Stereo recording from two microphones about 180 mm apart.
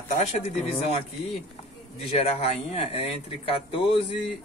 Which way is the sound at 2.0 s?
35° left (ahead or behind).